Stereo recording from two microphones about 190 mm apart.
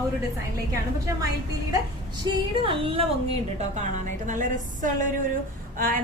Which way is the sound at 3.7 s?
40° right (ahead or behind).